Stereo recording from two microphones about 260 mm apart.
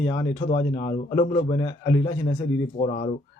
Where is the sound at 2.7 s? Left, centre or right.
Left.